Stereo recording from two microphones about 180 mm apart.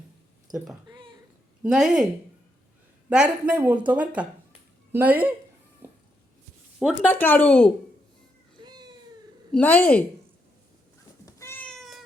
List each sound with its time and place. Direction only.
0.5 s speech: 20° right (ahead or behind)
0.9 s a sound: 25° right (ahead or behind)
1.6 s speech: 5° right (ahead or behind)
3.1 s speech: 5° right (ahead or behind)
6.7 s speech: 5° right (ahead or behind)
7.1 s speech: 10° left (ahead or behind)
8.6 s cat: 25° right (ahead or behind)
9.5 s speech: 10° left (ahead or behind)
11.3 s cat: 15° left (ahead or behind)